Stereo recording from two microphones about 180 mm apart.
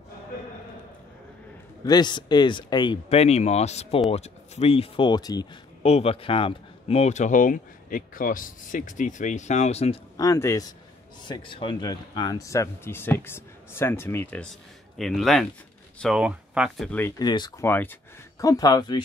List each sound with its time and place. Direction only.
1.9 s speech: 25° left (ahead or behind)
5.8 s speech: 35° left (ahead or behind)
10.1 s speech: 15° left (ahead or behind)
11.2 s speech: 25° left (ahead or behind); by 17.1 s 5° left (ahead or behind)
17.2 s speech: 25° left (ahead or behind)
17.6 s speech: 10° left (ahead or behind)